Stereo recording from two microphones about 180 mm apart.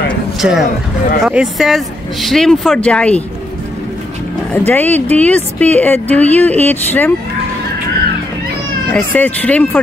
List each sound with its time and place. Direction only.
0.4 s speech: centre (ahead or behind)
4.5 s a woman's voice: 10° left (ahead or behind)
8.9 s a woman's voice: 10° left (ahead or behind)